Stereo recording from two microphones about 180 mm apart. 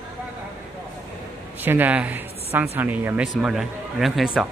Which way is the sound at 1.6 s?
10° right (ahead or behind).